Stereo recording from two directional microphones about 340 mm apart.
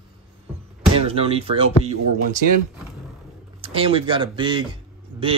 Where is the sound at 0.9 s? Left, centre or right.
Centre.